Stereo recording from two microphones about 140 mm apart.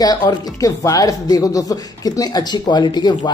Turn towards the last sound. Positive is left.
turn(degrees=30)  # may be behind; listen again after turning